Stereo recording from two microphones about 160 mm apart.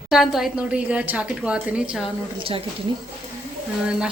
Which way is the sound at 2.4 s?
35° right (ahead or behind).